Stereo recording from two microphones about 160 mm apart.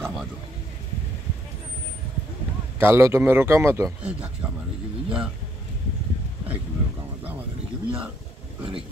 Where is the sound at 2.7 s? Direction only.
15° right (ahead or behind).